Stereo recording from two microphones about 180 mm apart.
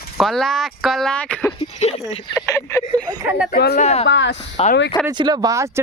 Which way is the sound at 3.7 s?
35° left (ahead or behind).